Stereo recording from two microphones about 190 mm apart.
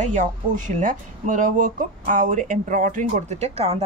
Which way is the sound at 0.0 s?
40° right (ahead or behind).